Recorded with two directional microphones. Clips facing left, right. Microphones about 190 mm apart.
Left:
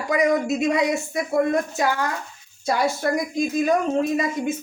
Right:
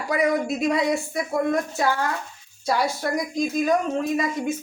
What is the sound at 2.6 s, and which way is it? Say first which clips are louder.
Speech: left 2 dB; 25° left (ahead or behind).